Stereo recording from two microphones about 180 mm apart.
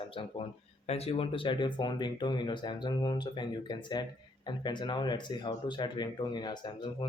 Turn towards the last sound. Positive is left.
turn(degrees=25)  # may be behind; listen again after turning